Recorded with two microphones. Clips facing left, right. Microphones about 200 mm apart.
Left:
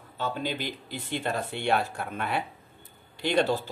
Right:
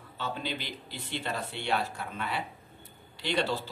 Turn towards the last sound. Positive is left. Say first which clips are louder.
# left 5 dB
turn(degrees=50)  # may be behind; listen again after turning